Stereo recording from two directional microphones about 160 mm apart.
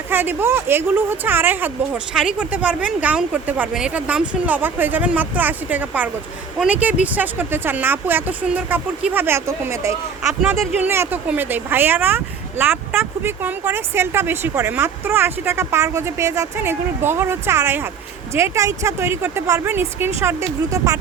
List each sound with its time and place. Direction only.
0.1 s speech: 15° right (ahead or behind)
10.2 s speech: 5° right (ahead or behind); by 21.0 s 20° right (ahead or behind)